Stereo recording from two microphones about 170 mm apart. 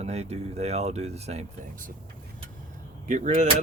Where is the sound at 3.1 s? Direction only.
45° right (ahead or behind).